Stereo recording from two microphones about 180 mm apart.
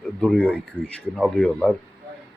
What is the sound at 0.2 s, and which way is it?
Speech, 5° left (ahead or behind).